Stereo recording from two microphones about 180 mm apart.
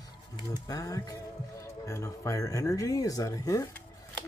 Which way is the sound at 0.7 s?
20° left (ahead or behind).